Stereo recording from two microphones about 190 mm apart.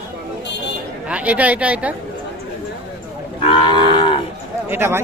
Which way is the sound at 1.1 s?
5° right (ahead or behind).